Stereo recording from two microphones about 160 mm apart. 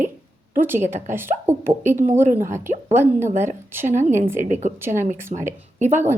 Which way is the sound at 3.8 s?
50° right (ahead or behind).